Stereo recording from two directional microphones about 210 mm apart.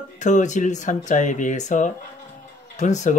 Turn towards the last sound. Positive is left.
turn(degrees=35)  # may be behind; listen again after turning